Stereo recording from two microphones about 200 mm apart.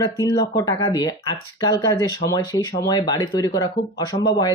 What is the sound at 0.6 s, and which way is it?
Speech, 20° left (ahead or behind).